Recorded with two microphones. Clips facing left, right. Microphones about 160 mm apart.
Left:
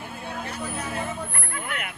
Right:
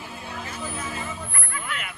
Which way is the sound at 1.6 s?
55° left (ahead or behind).